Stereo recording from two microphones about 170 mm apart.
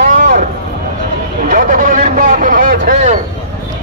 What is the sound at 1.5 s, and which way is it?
A man's voice, 50° right (ahead or behind).